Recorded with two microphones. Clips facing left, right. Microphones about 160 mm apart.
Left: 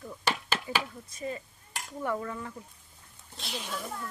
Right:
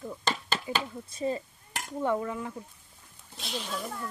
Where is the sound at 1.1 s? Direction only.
30° right (ahead or behind).